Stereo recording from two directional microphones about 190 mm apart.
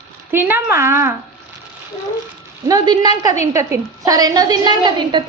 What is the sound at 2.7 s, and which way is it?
A woman's voice, 20° right (ahead or behind).